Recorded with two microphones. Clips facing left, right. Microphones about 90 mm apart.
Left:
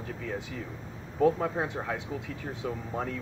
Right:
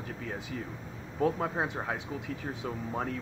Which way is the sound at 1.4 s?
20° right (ahead or behind).